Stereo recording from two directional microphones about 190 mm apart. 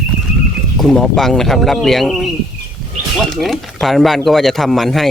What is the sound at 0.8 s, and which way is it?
Speech, centre (ahead or behind).